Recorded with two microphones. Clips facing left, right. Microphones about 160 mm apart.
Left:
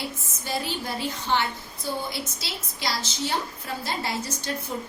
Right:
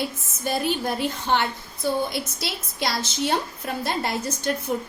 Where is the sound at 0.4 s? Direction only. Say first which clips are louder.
Right 6 dB; 55° right (ahead or behind).